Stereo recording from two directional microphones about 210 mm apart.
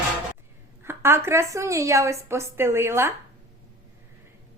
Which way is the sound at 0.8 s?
10° right (ahead or behind).